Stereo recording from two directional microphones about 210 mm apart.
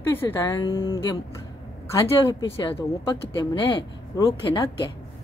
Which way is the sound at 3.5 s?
25° left (ahead or behind).